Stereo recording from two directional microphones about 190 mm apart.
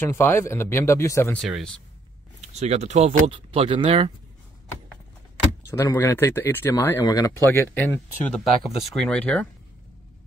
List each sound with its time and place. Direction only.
0.0 s speech: 10° left (ahead or behind)
1.4 s speech: centre (ahead or behind)
2.4 s speech: 35° right (ahead or behind)
5.7 s speech: 15° left (ahead or behind)